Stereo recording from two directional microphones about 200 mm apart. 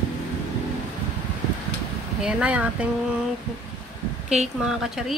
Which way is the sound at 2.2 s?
5° right (ahead or behind).